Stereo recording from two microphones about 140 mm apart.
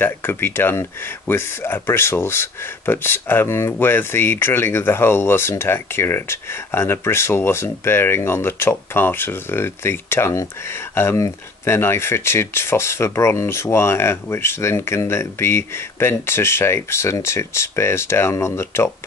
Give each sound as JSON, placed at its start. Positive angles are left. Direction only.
{"t": 0.0, "sound": "speech", "side_deg": 15}